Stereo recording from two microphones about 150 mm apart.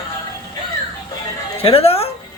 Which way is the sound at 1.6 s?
40° left (ahead or behind).